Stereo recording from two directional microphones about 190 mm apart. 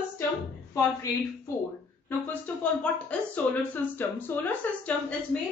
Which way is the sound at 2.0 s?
10° left (ahead or behind).